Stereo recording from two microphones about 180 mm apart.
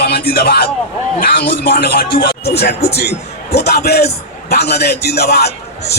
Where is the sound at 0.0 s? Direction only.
60° left (ahead or behind).